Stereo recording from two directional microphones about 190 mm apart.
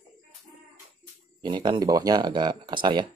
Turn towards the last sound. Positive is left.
turn(degrees=-25)  # may be behind; listen again after turning